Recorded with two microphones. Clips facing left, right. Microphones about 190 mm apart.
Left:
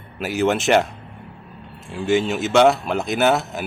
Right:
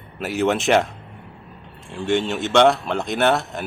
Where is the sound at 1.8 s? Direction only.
5° left (ahead or behind).